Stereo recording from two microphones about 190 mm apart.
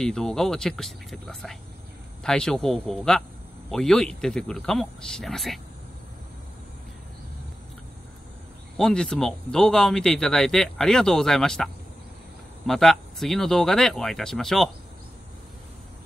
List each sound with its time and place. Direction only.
0.0 s speech: 5° left (ahead or behind)
8.7 s speech: 5° left (ahead or behind)